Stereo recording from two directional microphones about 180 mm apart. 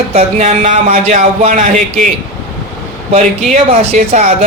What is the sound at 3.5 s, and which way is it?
Speech, 40° right (ahead or behind).